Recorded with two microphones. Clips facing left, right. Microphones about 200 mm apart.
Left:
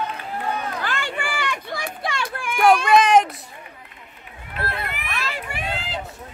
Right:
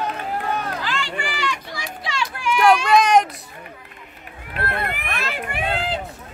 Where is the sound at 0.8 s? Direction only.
55° left (ahead or behind).